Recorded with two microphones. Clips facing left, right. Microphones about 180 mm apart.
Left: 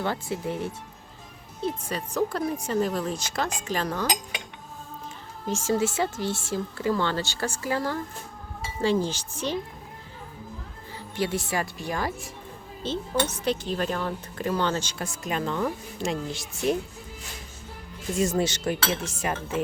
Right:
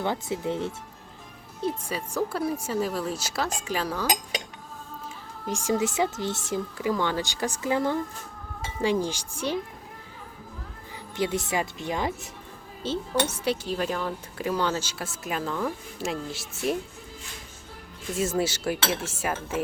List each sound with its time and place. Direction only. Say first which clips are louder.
0.0 s speech: right 1 dB; 20° right (ahead or behind)
1.6 s speech: even; 10° right (ahead or behind)
5.5 s speech: left 1 dB; 15° right (ahead or behind)
11.1 s speech: right 1 dB; 20° right (ahead or behind)
12.8 s speech: even; 10° right (ahead or behind)
18.2 s speech: left 1 dB; 5° right (ahead or behind)